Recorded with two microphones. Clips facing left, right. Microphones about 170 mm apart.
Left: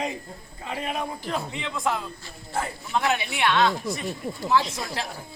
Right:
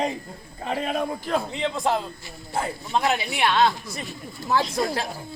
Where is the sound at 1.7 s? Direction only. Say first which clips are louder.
Right 1 dB; 30° right (ahead or behind).